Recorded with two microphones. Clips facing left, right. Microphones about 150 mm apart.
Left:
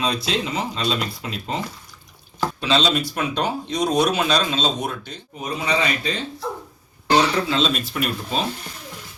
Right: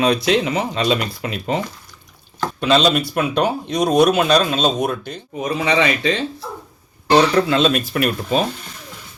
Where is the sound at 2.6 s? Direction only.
55° right (ahead or behind); by 6.1 s 90° right.